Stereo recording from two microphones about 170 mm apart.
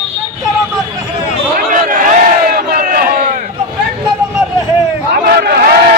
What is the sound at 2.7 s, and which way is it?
Crowd, 55° right (ahead or behind).